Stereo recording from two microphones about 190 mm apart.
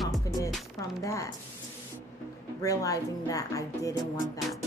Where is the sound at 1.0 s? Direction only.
15° left (ahead or behind).